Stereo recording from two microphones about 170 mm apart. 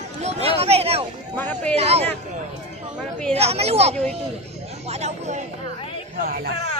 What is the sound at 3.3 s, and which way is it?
Speech, 35° right (ahead or behind).